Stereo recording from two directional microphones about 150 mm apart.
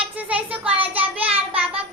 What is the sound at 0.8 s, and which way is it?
Child singing, 40° right (ahead or behind).